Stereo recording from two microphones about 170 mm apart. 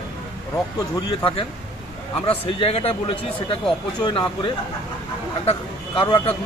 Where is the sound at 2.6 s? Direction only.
35° left (ahead or behind).